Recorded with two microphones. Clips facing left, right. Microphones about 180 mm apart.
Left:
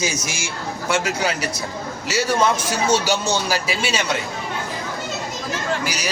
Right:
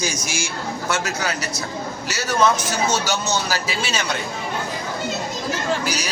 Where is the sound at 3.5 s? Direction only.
10° left (ahead or behind).